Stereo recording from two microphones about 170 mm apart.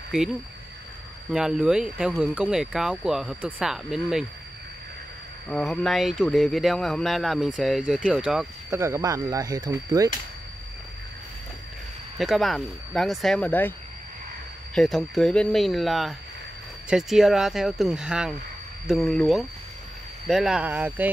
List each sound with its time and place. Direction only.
1.3 s speech: 5° right (ahead or behind)
5.5 s speech: centre (ahead or behind)
8.6 s speech: 15° right (ahead or behind)
12.2 s speech: centre (ahead or behind)